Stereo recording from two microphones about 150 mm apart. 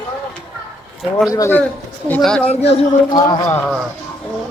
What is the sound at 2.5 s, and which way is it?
Speech, 45° left (ahead or behind).